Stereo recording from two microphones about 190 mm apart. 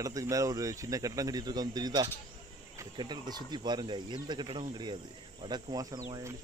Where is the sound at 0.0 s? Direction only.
20° right (ahead or behind).